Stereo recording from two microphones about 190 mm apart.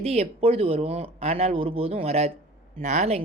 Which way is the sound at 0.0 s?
30° right (ahead or behind).